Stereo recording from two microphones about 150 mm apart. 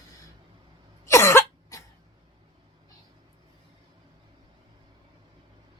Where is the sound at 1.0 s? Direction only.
15° left (ahead or behind).